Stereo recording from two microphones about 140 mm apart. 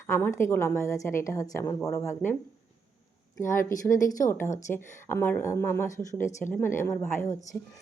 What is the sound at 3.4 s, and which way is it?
Speech, 70° left (ahead or behind).